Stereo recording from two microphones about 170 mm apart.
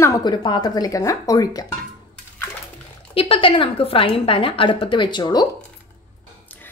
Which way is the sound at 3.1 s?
30° left (ahead or behind).